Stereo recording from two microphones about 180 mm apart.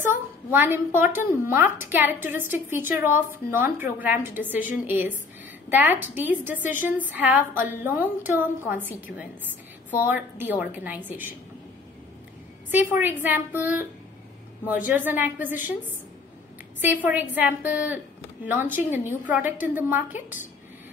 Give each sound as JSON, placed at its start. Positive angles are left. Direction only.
{"t": 0.5, "sound": "a woman's voice", "side_deg": -10}
{"t": 12.9, "sound": "a woman's voice", "side_deg": -10}
{"t": 16.8, "sound": "a woman's voice", "side_deg": -10}